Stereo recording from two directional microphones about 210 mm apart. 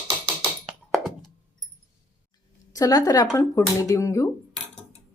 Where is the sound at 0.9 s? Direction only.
Centre (ahead or behind).